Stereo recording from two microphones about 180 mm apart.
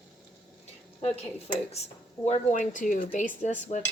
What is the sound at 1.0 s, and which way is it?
Speech, 35° left (ahead or behind).